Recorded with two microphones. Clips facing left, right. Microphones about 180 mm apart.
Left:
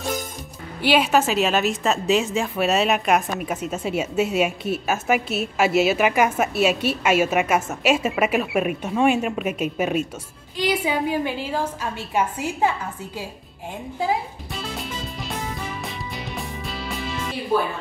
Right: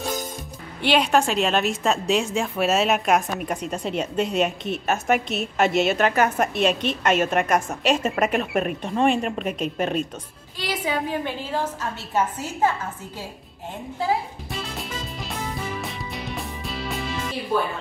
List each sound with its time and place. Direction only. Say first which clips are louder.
0.8 s a woman's voice: left 1 dB; 5° left (ahead or behind)
14.5 s music: left 1 dB; centre (ahead or behind)